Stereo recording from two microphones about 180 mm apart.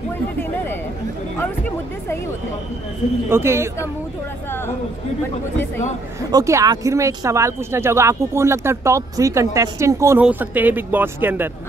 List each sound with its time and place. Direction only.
3.3 s speech: 15° right (ahead or behind)
6.3 s speech: 20° right (ahead or behind)